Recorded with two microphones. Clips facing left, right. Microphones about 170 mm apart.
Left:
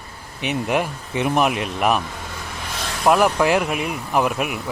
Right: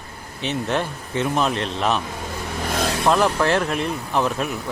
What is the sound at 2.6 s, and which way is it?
Vehicle, 50° right (ahead or behind).